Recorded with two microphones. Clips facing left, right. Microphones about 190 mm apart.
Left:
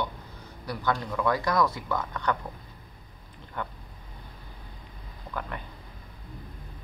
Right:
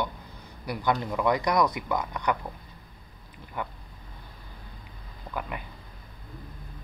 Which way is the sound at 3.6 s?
5° right (ahead or behind).